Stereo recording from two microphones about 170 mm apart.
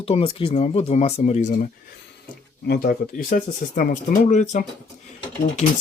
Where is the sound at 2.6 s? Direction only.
60° left (ahead or behind).